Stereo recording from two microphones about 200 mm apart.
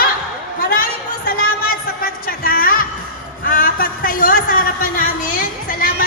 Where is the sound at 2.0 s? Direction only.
45° left (ahead or behind).